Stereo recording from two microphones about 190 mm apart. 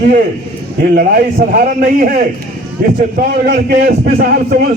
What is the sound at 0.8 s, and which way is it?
A man's voice, 50° right (ahead or behind).